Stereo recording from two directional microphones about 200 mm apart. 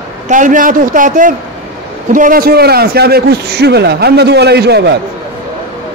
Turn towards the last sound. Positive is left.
turn(degrees=-55)  # may be behind; listen again after turning